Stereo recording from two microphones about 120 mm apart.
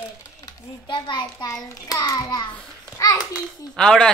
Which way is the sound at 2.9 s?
30° left (ahead or behind).